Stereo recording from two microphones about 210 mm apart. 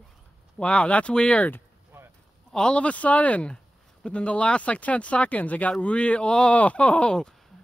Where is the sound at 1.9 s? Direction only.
10° right (ahead or behind).